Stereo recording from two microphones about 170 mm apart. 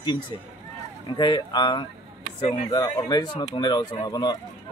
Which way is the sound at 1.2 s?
25° left (ahead or behind).